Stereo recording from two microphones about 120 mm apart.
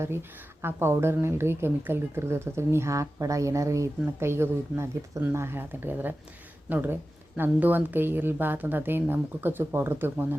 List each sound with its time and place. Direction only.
0.0 s speech: 20° right (ahead or behind)